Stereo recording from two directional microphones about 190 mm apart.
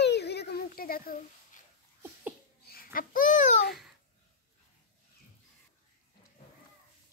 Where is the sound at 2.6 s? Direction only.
50° left (ahead or behind).